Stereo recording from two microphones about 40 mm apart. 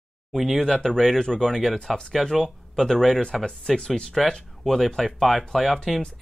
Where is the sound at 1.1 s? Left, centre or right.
Centre.